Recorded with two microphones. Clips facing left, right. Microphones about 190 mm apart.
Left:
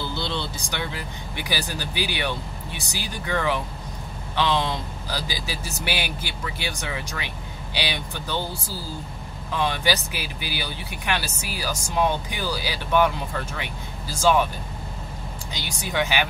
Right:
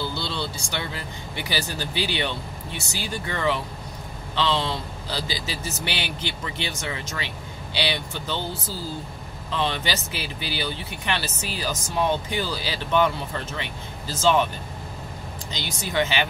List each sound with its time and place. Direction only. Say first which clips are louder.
0.1 s vehicle: left 1 dB; 20° left (ahead or behind)
1.3 s a man's voice: even; 15° left (ahead or behind)
9.6 s a man's voice: left 2 dB; 10° left (ahead or behind)
15.5 s a man's voice: right 1 dB; 10° left (ahead or behind)